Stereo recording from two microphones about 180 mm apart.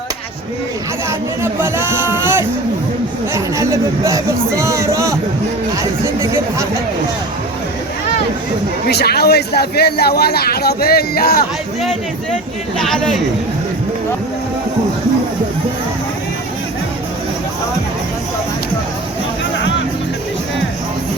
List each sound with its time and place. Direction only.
1.4 s speech: 15° right (ahead or behind)
8.9 s a man's voice: 65° left (ahead or behind)
12.8 s speech: centre (ahead or behind)